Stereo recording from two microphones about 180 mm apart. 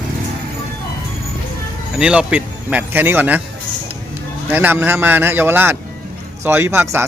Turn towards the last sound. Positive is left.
turn(degrees=-15)  # may be behind; listen again after turning